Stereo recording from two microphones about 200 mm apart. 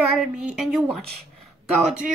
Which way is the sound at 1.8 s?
5° right (ahead or behind).